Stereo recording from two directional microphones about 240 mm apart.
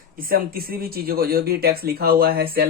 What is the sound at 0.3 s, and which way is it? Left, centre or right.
Speech, right.